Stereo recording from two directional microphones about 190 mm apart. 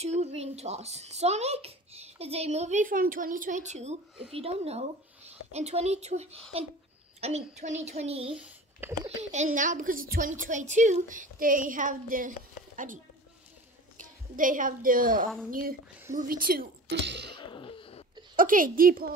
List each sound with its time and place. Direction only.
0.0 s a child's voice: 35° right (ahead or behind)
8.3 s a child's voice: 5° right (ahead or behind)
9.2 s a woman's voice: 40° right (ahead or behind)
17.4 s throat clearing: 25° left (ahead or behind)
18.3 s a woman's voice: 45° right (ahead or behind)